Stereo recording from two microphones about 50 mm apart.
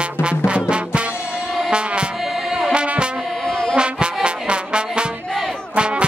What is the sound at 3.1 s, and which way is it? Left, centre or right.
Music, centre.